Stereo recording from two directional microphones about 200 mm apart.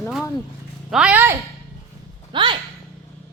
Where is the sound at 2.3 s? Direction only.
25° right (ahead or behind).